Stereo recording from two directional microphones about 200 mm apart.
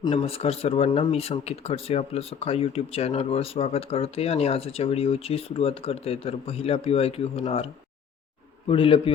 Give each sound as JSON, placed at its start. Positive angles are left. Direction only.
{"t": 0.0, "sound": "speech", "side_deg": 25}